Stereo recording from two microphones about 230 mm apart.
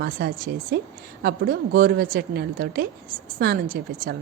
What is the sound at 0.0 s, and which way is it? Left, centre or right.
A woman's voice, right.